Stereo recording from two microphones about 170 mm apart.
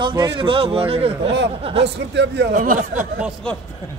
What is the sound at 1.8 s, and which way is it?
Speech, 90° right.